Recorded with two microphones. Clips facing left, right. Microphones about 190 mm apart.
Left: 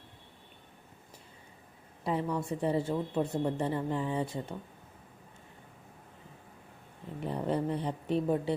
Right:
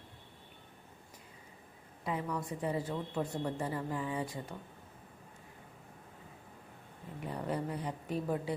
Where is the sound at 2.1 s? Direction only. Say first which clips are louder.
Left 5 dB; 30° left (ahead or behind).